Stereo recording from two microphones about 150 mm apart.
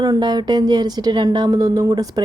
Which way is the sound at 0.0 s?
30° right (ahead or behind).